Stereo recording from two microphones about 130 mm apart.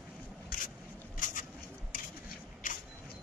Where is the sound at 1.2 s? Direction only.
80° left.